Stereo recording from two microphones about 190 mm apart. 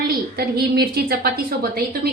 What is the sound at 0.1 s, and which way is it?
A woman's voice, 55° right (ahead or behind).